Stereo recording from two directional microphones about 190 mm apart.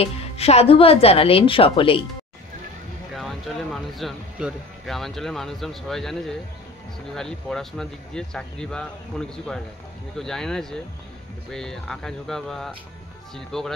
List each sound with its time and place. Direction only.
0.0 s a woman's voice: 35° left (ahead or behind)
3.2 s speech: centre (ahead or behind)